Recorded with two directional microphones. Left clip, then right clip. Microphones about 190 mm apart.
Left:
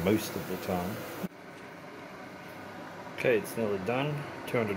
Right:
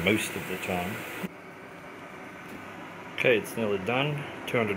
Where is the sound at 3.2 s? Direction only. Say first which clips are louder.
Right 3 dB; 10° right (ahead or behind).